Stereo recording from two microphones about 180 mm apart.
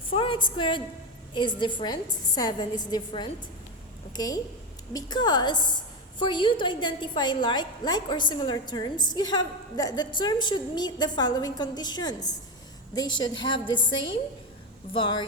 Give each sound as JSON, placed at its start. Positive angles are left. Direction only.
{"t": 0.1, "sound": "a woman's voice", "side_deg": 30}